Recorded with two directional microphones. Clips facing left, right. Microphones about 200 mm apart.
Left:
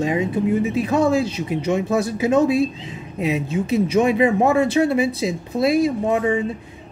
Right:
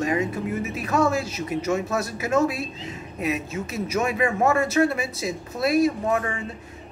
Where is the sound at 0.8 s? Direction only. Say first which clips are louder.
Left 1 dB; 30° left (ahead or behind).